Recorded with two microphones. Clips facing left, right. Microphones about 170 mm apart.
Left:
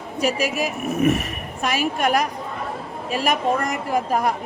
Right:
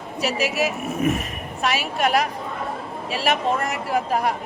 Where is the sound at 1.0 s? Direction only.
65° left (ahead or behind).